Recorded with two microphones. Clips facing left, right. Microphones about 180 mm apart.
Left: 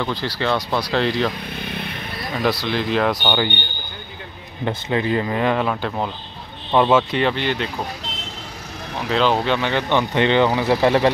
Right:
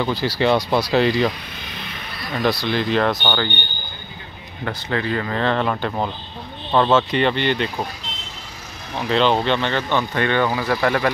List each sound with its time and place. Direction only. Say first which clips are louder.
0.0 s speech: right 3 dB; 10° right (ahead or behind)
2.4 s speech: right 1 dB; centre (ahead or behind)
4.6 s speech: left 3 dB; 20° left (ahead or behind); by 6.1 s centre (ahead or behind)
6.7 s speech: left 1 dB; 10° left (ahead or behind)
9.1 s speech: right 1 dB; 5° left (ahead or behind); by 11.1 s 20° left (ahead or behind)